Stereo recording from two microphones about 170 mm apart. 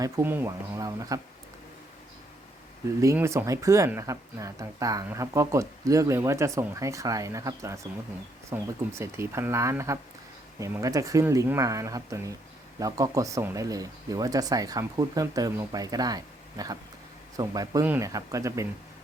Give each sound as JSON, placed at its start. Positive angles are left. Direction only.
{"t": 0.0, "sound": "speech", "side_deg": -10}
{"t": 3.0, "sound": "speech", "side_deg": -15}